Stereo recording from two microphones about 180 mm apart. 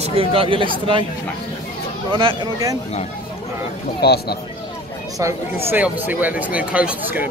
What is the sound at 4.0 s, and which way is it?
Speech, 60° left (ahead or behind).